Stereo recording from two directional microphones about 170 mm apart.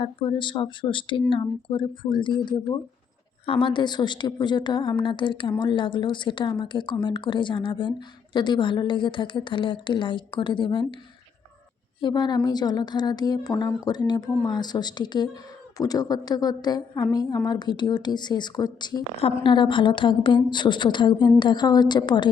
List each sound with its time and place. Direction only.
0.0 s a woman's voice: 30° left (ahead or behind)
11.9 s a woman's voice: 25° left (ahead or behind)